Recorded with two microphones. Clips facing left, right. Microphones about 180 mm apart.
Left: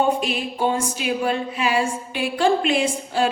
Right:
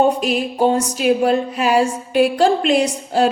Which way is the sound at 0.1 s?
40° right (ahead or behind).